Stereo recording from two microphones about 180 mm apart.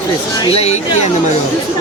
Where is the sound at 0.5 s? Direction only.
35° left (ahead or behind).